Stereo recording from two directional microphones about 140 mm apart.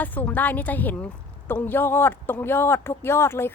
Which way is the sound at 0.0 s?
10° left (ahead or behind).